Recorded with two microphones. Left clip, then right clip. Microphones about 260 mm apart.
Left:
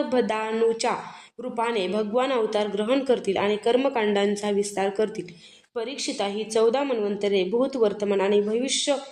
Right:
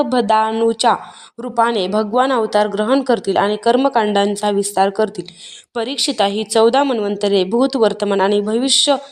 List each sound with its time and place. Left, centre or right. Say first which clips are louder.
0.1 s a woman's voice: right 10 dB; right
8.6 s speech: right 12 dB; centre